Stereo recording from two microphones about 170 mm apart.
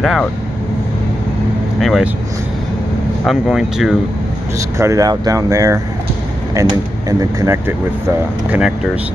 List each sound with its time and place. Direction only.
0.0 s speech: centre (ahead or behind)
1.8 s speech: centre (ahead or behind)
3.3 s speech: centre (ahead or behind)
4.6 s speech: 20° right (ahead or behind)